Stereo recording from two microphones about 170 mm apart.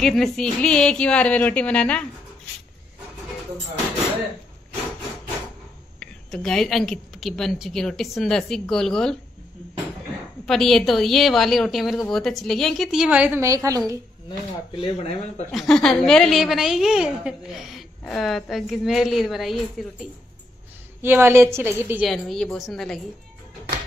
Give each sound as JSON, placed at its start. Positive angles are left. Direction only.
{"t": 0.0, "sound": "a woman's voice", "side_deg": 0}
{"t": 5.9, "sound": "a woman's voice", "side_deg": 5}
{"t": 10.4, "sound": "a woman's voice", "side_deg": 0}
{"t": 14.8, "sound": "speech", "side_deg": 40}
{"t": 15.5, "sound": "a woman's voice", "side_deg": 5}
{"t": 21.0, "sound": "a woman's voice", "side_deg": -15}
{"t": 22.0, "sound": "a woman's voice", "side_deg": 0}